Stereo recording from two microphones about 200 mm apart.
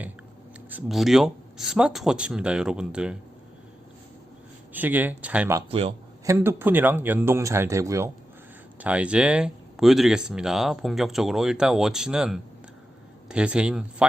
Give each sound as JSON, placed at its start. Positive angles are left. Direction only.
{"t": 0.7, "sound": "speech", "side_deg": -5}
{"t": 4.7, "sound": "speech", "side_deg": -10}
{"t": 5.8, "sound": "speech", "side_deg": -30}
{"t": 6.2, "sound": "speech", "side_deg": -15}